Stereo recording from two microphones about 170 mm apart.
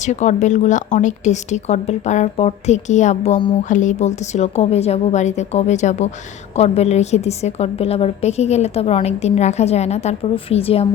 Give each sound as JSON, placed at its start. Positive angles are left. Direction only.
{"t": 0.0, "sound": "a woman's voice", "side_deg": 45}